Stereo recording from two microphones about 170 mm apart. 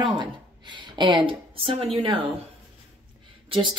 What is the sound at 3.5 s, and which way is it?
Speech, 30° right (ahead or behind).